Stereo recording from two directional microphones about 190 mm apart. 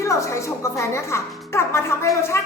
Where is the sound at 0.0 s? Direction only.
15° left (ahead or behind).